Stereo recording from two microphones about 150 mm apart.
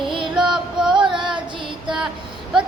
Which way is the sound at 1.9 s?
5° right (ahead or behind).